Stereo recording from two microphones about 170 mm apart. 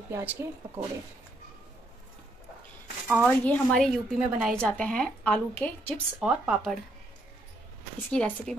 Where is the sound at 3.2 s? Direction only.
5° left (ahead or behind).